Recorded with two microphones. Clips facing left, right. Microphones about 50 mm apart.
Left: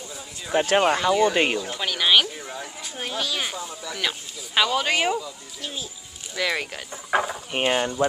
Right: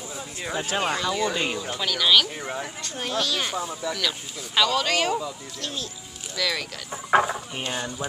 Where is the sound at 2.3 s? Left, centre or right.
Right.